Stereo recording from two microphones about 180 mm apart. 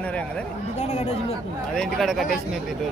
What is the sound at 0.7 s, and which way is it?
Speech, 35° left (ahead or behind).